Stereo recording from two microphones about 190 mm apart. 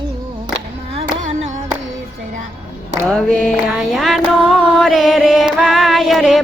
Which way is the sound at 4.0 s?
Centre (ahead or behind).